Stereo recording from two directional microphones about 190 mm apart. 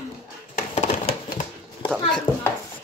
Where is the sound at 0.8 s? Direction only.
40° left (ahead or behind).